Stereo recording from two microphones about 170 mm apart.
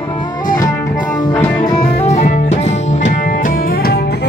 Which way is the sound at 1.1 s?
15° left (ahead or behind).